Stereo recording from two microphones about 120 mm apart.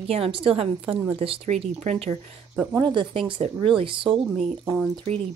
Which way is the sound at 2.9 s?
45° right (ahead or behind).